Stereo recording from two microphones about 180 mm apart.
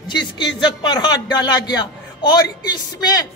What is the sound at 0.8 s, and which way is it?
A man's voice, 25° left (ahead or behind).